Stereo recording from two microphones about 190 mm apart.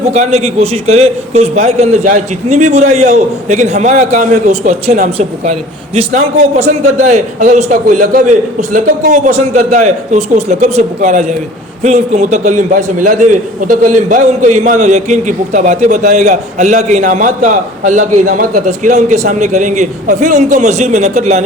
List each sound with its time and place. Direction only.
0.1 s a man's voice: 35° right (ahead or behind)